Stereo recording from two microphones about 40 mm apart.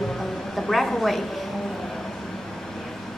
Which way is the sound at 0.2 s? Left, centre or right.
Centre.